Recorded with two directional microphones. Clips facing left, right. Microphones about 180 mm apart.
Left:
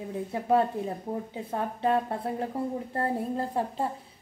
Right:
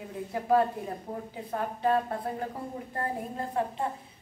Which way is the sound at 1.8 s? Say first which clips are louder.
Even; 25° left (ahead or behind).